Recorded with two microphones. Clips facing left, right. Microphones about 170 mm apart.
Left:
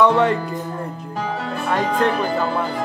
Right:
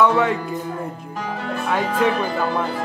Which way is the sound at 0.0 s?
5° right (ahead or behind).